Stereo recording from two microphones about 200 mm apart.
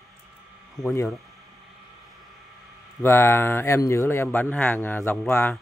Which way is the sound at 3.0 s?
10° left (ahead or behind).